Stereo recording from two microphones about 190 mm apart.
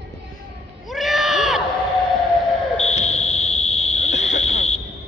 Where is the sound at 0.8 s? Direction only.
Centre (ahead or behind).